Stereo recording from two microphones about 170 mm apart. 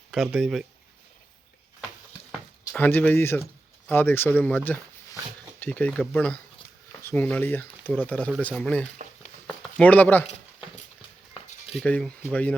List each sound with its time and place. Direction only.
0.3 s speech: 5° right (ahead or behind)
2.7 s speech: 10° left (ahead or behind)
11.8 s speech: 5° left (ahead or behind)